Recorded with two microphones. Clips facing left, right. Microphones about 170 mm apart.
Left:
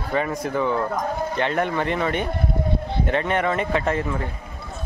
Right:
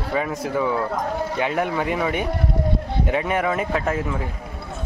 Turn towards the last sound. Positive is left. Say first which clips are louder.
# left 1 dB
turn(degrees=-5)  # may be behind; listen again after turning